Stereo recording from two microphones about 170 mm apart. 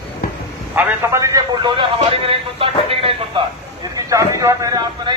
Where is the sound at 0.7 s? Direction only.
15° right (ahead or behind); by 3.4 s 35° right (ahead or behind).